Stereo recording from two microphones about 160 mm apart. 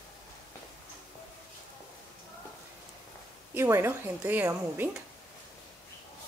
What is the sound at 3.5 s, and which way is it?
A woman's voice, 15° right (ahead or behind).